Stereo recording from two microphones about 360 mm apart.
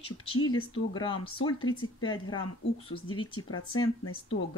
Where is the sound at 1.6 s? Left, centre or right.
Left.